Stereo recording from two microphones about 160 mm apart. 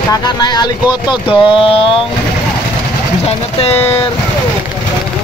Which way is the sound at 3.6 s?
40° left (ahead or behind).